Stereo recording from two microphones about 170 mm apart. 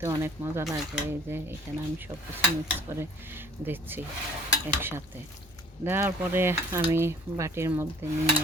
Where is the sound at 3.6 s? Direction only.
10° right (ahead or behind).